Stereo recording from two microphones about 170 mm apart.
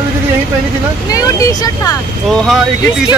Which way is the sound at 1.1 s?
20° left (ahead or behind).